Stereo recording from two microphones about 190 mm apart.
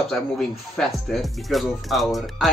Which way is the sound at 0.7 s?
Centre (ahead or behind).